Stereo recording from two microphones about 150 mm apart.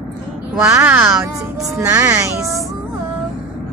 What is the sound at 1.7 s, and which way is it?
Speech, 20° right (ahead or behind).